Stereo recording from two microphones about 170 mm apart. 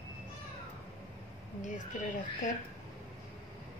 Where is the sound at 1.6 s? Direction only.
45° left (ahead or behind).